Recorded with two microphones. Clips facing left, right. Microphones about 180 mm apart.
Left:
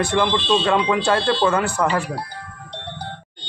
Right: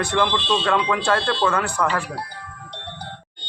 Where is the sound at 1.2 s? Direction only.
5° left (ahead or behind).